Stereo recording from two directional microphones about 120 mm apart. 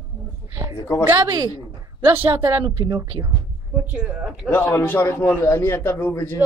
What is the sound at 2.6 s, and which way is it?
Speech, 40° right (ahead or behind).